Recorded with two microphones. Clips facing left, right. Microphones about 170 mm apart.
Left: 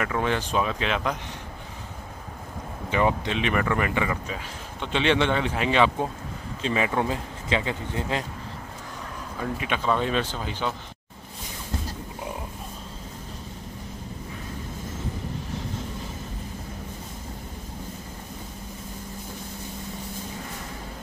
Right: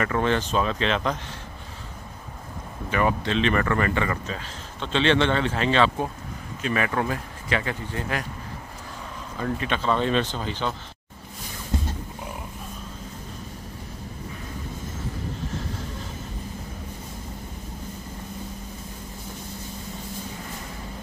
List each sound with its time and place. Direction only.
0.0 s speech: 10° left (ahead or behind)
2.9 s speech: 20° left (ahead or behind)
9.4 s speech: 10° left (ahead or behind)